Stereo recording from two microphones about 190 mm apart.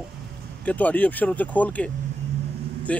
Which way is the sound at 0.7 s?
10° left (ahead or behind).